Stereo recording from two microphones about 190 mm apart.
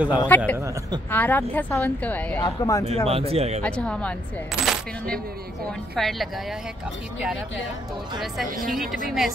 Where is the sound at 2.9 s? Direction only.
30° right (ahead or behind).